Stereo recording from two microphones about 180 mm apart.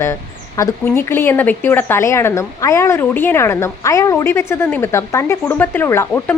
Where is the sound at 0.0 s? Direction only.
15° left (ahead or behind).